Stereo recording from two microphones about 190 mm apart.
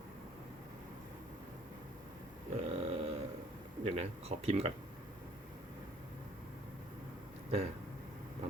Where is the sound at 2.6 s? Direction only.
35° right (ahead or behind).